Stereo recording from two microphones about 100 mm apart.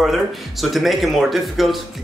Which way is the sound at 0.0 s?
Centre (ahead or behind).